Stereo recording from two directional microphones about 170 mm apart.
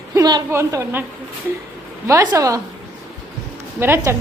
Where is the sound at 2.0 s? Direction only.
15° right (ahead or behind).